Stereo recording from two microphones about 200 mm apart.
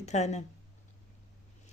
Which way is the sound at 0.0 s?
35° left (ahead or behind).